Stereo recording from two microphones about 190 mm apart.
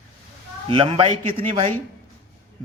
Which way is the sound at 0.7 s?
30° right (ahead or behind).